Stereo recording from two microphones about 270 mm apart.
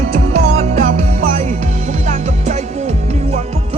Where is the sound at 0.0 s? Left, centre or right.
Right.